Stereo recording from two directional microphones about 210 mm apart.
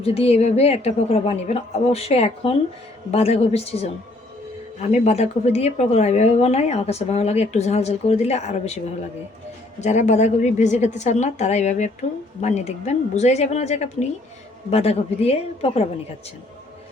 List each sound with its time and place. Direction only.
0.0 s a woman's voice: 30° left (ahead or behind)
9.8 s a woman's voice: 35° left (ahead or behind)